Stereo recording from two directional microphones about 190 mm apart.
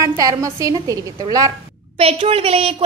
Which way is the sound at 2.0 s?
30° right (ahead or behind).